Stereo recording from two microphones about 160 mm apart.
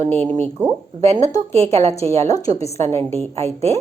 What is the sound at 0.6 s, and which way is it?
Speech, 10° right (ahead or behind).